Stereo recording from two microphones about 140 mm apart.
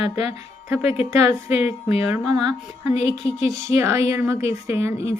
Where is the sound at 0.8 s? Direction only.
45° left (ahead or behind).